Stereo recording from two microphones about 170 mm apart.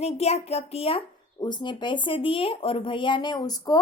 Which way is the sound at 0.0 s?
40° left (ahead or behind).